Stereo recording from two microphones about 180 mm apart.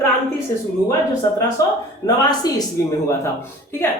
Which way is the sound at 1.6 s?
20° left (ahead or behind).